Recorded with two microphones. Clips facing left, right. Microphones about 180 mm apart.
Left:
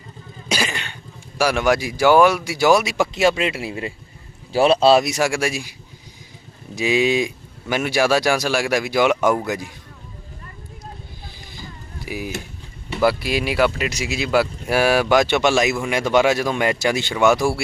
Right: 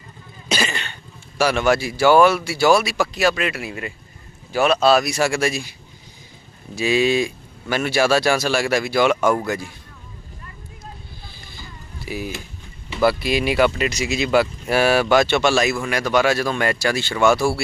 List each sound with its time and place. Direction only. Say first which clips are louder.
0.4 s cough: right 1 dB; 10° left (ahead or behind)
1.4 s speech: even; 10° left (ahead or behind)
6.7 s speech: even; 15° left (ahead or behind)
11.3 s boat: left 4 dB; 15° left (ahead or behind)
13.0 s speech: right 1 dB; 10° left (ahead or behind)